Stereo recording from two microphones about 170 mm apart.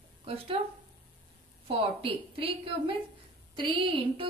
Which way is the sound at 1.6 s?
30° right (ahead or behind).